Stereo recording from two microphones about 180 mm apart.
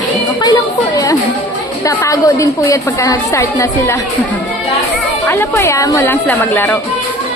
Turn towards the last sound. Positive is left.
turn(degrees=10)  # may be behind; listen again after turning